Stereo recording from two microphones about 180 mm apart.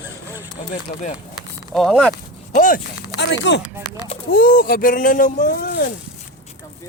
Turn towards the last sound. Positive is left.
turn(degrees=60)  # may be behind; listen again after turning